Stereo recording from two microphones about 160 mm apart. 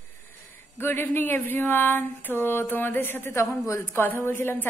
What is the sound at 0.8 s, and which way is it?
Speech, 15° left (ahead or behind).